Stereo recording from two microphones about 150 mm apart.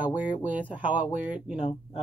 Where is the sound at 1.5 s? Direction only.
40° left (ahead or behind).